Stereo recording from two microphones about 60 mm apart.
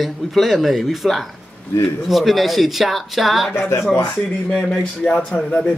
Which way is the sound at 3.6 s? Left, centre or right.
Left.